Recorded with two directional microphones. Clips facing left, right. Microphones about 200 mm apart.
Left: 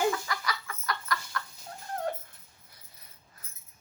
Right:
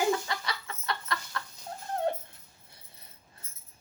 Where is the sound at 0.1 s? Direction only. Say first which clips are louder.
Right 3 dB; 25° right (ahead or behind).